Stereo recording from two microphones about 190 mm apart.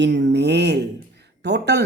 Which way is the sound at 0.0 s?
65° right (ahead or behind).